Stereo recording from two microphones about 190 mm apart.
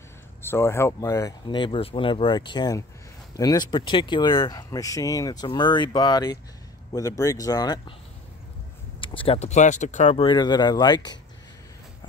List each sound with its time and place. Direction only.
0.4 s speech: 15° left (ahead or behind)
9.0 s speech: 30° left (ahead or behind)